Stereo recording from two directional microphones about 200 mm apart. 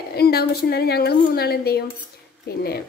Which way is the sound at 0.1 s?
50° left (ahead or behind).